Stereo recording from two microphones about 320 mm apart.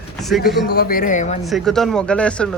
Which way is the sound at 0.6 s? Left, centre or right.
Left.